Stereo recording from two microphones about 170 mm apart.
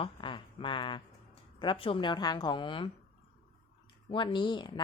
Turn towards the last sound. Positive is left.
turn(degrees=25)  # may be behind; listen again after turning